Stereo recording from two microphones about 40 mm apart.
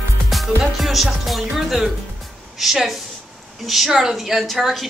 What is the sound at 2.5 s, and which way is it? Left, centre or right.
A woman's voice, centre.